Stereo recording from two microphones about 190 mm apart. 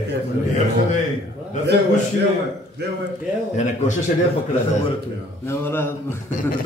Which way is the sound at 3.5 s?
35° left (ahead or behind).